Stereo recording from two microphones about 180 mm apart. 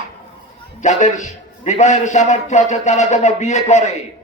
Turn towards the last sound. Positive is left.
turn(degrees=40)  # may be behind; listen again after turning